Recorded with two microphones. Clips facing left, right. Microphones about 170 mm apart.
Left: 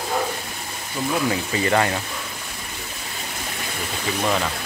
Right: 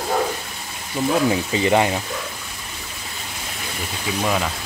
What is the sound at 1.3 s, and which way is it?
Speech, 20° right (ahead or behind).